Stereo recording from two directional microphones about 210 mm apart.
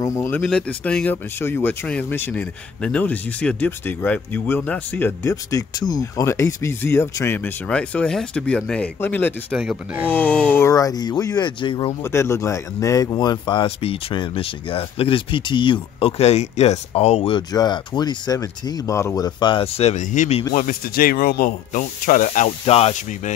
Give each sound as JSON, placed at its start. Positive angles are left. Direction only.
{"t": 0.0, "sound": "speech", "side_deg": 15}
{"t": 10.1, "sound": "speech", "side_deg": 5}
{"t": 12.0, "sound": "speech", "side_deg": 10}